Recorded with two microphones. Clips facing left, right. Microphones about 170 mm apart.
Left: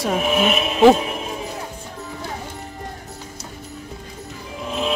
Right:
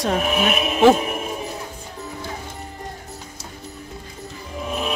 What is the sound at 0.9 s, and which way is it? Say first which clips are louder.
Music: left 1 dB; 5° right (ahead or behind).